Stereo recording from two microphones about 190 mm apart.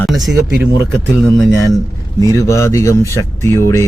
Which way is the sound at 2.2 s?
15° left (ahead or behind).